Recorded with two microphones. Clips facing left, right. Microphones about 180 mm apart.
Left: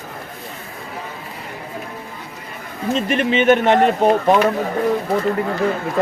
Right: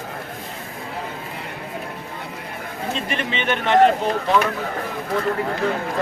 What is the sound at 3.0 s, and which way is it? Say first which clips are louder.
Speech: left 10 dB; 45° left (ahead or behind).